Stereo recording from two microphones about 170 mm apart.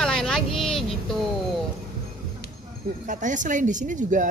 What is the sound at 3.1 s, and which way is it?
Speech, 50° right (ahead or behind).